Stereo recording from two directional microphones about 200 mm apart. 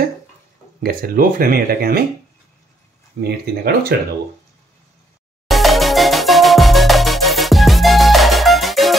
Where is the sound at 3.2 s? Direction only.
55° right (ahead or behind).